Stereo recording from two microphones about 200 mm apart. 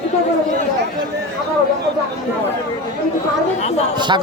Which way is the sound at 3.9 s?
20° right (ahead or behind).